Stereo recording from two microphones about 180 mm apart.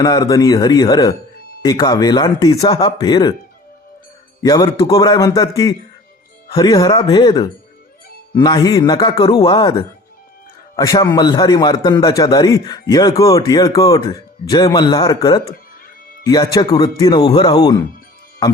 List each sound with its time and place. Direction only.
0.0 s a man's voice: 20° left (ahead or behind)
4.4 s a man's voice: 20° left (ahead or behind)